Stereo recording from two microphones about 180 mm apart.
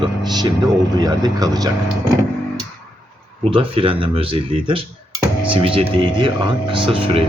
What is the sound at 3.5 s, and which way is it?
Speech, 30° right (ahead or behind).